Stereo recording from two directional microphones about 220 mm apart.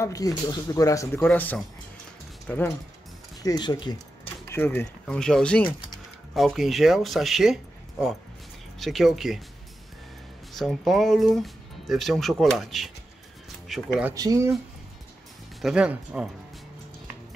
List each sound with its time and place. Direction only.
0.0 s speech: 15° left (ahead or behind)
3.4 s speech: 20° left (ahead or behind); by 9.4 s centre (ahead or behind)
10.5 s speech: centre (ahead or behind)
14.1 s speech: 15° right (ahead or behind)
15.6 s speech: 5° right (ahead or behind)